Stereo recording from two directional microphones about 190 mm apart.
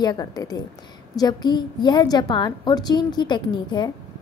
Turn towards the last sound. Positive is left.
turn(degrees=25)  # may be behind; listen again after turning